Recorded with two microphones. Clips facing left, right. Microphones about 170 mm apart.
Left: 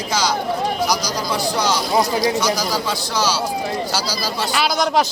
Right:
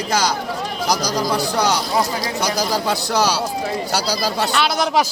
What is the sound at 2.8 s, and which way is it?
Speech, 60° right (ahead or behind).